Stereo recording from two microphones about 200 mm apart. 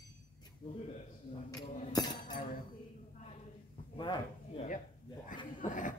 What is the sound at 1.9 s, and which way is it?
Chink, 20° left (ahead or behind).